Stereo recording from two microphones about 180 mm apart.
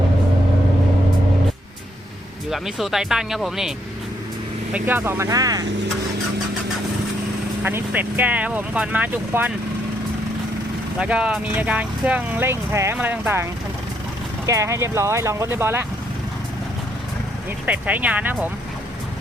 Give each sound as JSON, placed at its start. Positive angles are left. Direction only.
{"t": 2.5, "sound": "speech", "side_deg": 0}
{"t": 4.7, "sound": "speech", "side_deg": -10}
{"t": 7.6, "sound": "speech", "side_deg": -10}
{"t": 10.9, "sound": "speech", "side_deg": -5}
{"t": 17.7, "sound": "speech", "side_deg": -10}